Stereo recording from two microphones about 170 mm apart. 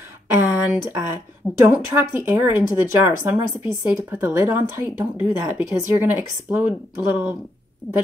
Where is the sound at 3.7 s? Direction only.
10° right (ahead or behind).